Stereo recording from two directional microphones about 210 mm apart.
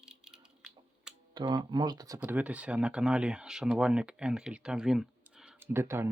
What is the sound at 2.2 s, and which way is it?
Speech, 5° right (ahead or behind).